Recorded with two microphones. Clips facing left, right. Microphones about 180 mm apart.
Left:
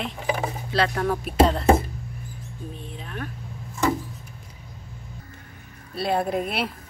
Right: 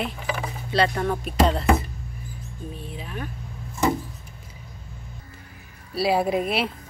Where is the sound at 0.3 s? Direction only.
40° left (ahead or behind).